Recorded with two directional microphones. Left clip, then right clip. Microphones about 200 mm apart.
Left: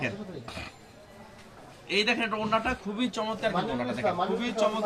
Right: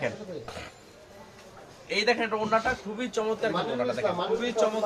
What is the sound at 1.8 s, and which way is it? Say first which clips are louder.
Speech: right 1 dB; 15° right (ahead or behind).